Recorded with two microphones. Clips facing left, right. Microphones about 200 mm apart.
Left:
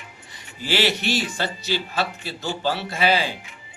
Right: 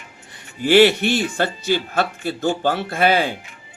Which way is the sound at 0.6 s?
55° right (ahead or behind).